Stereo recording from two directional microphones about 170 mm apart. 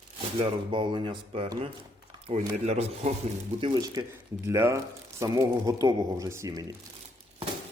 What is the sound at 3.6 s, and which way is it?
A man's voice, 20° right (ahead or behind).